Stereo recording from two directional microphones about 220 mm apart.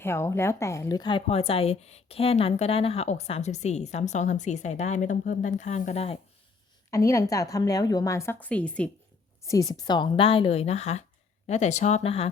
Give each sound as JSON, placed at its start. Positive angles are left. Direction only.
{"t": 0.0, "sound": "a woman's voice", "side_deg": 10}
{"t": 6.9, "sound": "a woman's voice", "side_deg": 15}
{"t": 9.5, "sound": "a woman's voice", "side_deg": 15}